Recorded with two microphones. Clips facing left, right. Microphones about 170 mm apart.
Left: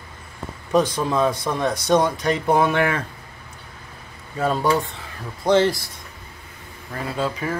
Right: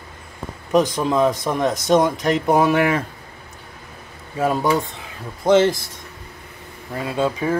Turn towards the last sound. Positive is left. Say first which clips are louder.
# right 4 dB
turn(degrees=-15)  # may be behind; listen again after turning